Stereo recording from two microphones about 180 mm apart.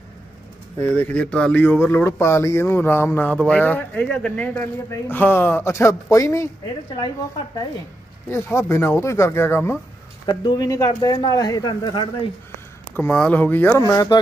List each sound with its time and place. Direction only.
0.8 s speech: 10° left (ahead or behind)
8.3 s speech: 15° left (ahead or behind)
12.9 s speech: 10° left (ahead or behind)